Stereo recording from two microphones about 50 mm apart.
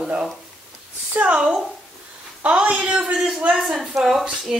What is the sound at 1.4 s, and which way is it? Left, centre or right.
Speech, centre.